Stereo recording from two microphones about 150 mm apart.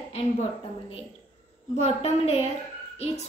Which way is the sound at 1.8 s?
45° left (ahead or behind).